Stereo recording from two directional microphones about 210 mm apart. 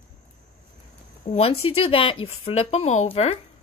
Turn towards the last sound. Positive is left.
turn(degrees=30)  # may be behind; listen again after turning